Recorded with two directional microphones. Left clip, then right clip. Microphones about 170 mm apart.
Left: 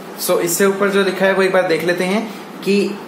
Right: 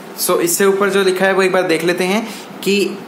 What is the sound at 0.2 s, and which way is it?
A man's voice, 30° right (ahead or behind).